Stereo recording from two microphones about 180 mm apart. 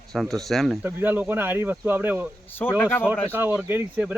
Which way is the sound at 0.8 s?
10° right (ahead or behind).